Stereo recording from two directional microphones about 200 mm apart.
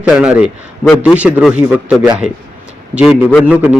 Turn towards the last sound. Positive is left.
turn(degrees=-10)  # may be behind; listen again after turning